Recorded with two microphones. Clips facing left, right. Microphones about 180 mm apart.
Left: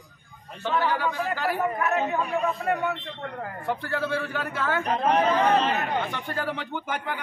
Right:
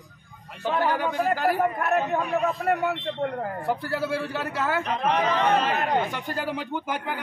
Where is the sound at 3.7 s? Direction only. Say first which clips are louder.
Even; 5° right (ahead or behind).